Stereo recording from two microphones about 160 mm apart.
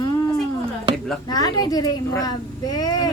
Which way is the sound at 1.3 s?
25° left (ahead or behind).